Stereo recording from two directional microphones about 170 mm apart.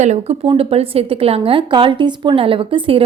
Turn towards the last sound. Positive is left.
turn(degrees=-30)  # may be behind; listen again after turning